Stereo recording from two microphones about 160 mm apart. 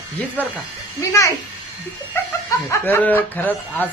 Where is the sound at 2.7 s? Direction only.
15° left (ahead or behind).